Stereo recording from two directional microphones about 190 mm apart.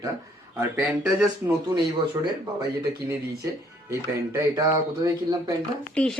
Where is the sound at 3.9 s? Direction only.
15° right (ahead or behind).